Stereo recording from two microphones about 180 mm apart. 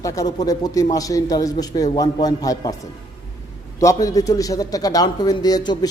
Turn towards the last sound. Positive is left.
turn(degrees=20)  # may be behind; listen again after turning